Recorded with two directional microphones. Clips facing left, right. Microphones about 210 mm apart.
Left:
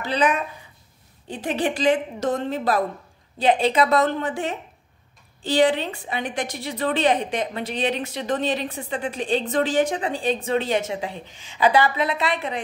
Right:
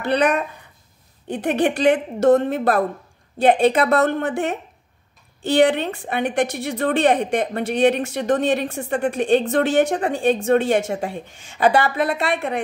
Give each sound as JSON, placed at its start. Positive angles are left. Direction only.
{"t": 0.0, "sound": "a woman's voice", "side_deg": -60}